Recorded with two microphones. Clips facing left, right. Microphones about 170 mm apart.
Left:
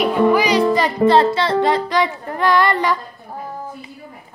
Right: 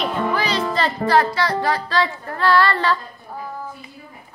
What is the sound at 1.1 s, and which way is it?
Music, 25° left (ahead or behind).